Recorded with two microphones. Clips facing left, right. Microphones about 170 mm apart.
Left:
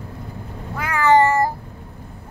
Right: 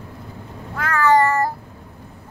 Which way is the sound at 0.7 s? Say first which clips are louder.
Left 1 dB; 15° left (ahead or behind).